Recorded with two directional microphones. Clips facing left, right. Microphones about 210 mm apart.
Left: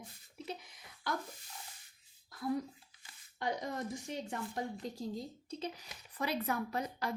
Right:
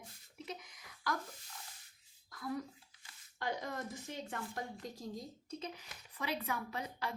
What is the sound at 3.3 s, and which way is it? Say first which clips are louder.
Speech: left 2 dB; 20° left (ahead or behind).